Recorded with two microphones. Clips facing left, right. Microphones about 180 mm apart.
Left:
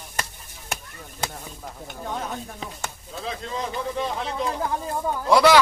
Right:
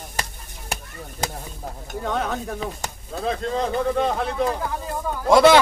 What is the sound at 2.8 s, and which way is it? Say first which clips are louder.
Speech: right 4 dB; 45° right (ahead or behind).